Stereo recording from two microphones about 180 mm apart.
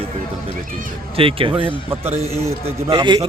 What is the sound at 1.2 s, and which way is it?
A man's voice, 30° right (ahead or behind).